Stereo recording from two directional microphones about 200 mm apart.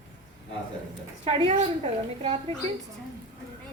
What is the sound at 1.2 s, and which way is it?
A woman's voice, 30° right (ahead or behind).